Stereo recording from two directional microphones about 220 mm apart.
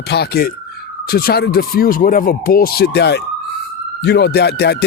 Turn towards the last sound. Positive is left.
turn(degrees=50)  # may be behind; listen again after turning